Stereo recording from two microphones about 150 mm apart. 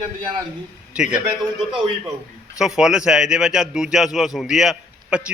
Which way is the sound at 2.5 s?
5° right (ahead or behind).